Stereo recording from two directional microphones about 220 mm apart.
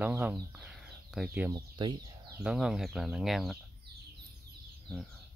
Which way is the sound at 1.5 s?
20° right (ahead or behind).